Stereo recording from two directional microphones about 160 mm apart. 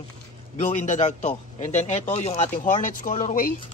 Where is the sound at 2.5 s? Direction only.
55° left (ahead or behind).